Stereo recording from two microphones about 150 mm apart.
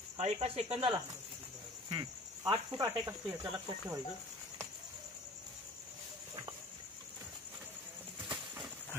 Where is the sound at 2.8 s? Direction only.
15° right (ahead or behind).